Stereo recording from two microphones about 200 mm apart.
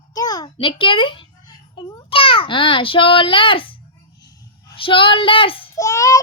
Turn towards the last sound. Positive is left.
turn(degrees=15)  # may be behind; listen again after turning